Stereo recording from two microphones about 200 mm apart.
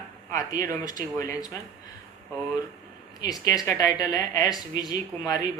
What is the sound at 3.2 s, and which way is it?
A woman's voice, 20° left (ahead or behind).